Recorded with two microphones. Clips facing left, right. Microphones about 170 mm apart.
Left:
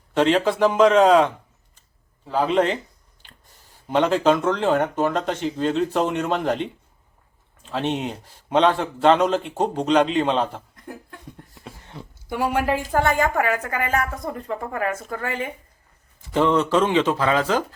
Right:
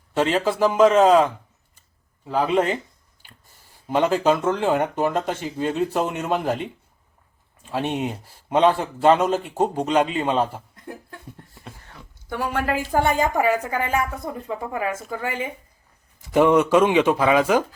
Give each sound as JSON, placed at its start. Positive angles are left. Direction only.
{"t": 0.1, "sound": "speech", "side_deg": -5}
{"t": 2.3, "sound": "a man's voice", "side_deg": -10}
{"t": 3.8, "sound": "a man's voice", "side_deg": -5}
{"t": 11.9, "sound": "a sound", "side_deg": 25}
{"t": 12.3, "sound": "speech", "side_deg": 10}
{"t": 12.9, "sound": "a man's voice", "side_deg": -15}